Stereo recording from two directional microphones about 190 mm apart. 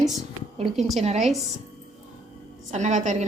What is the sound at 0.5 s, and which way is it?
Speech, 30° right (ahead or behind).